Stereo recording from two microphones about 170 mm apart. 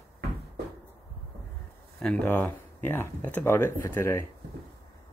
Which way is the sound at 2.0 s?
10° left (ahead or behind).